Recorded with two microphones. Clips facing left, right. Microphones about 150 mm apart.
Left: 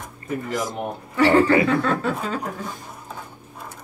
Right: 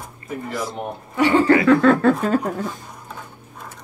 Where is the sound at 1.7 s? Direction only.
75° right (ahead or behind).